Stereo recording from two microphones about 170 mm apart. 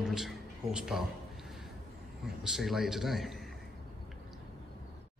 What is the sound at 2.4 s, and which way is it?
A man's voice, centre (ahead or behind).